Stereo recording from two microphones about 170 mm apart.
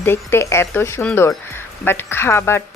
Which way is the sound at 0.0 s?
15° left (ahead or behind).